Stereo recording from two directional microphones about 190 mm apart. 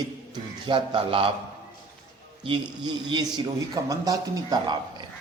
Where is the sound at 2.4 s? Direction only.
25° right (ahead or behind).